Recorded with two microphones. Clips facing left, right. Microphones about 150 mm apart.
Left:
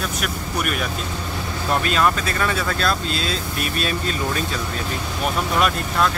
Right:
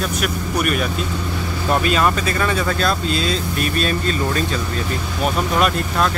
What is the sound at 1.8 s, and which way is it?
Speech, 5° right (ahead or behind).